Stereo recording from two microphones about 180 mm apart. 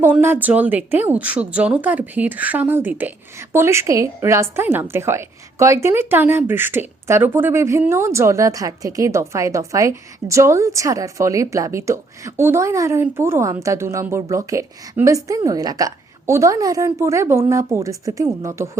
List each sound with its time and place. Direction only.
0.0 s a woman's voice: 10° right (ahead or behind)